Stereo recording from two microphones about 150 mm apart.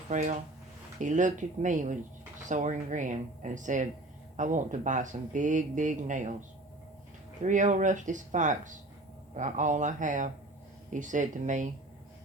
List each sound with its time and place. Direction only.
0.1 s speech: 55° right (ahead or behind)
7.4 s speech: 55° right (ahead or behind)